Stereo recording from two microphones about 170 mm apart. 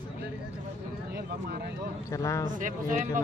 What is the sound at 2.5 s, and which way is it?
Speech, 50° right (ahead or behind).